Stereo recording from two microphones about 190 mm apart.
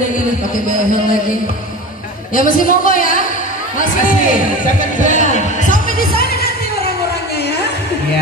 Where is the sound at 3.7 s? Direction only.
45° left (ahead or behind).